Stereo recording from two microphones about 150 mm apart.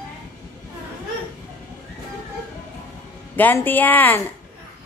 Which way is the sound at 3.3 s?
10° left (ahead or behind).